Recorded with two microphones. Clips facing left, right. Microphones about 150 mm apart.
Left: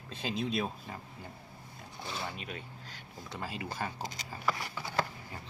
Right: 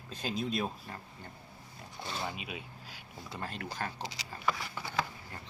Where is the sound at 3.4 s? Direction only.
5° left (ahead or behind).